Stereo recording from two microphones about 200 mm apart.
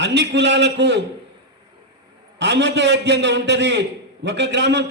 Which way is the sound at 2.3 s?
60° right (ahead or behind).